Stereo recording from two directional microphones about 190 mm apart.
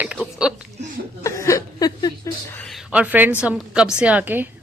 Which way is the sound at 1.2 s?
15° left (ahead or behind).